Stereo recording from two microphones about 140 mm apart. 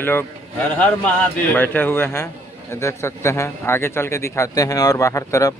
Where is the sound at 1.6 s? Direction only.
15° left (ahead or behind).